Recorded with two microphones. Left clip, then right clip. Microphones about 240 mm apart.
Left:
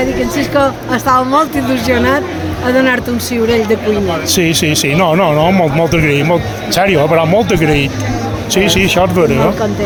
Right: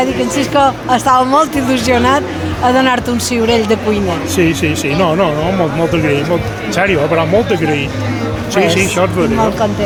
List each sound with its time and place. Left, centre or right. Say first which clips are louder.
0.0 s a woman's voice: even; centre
4.4 s speech: even; left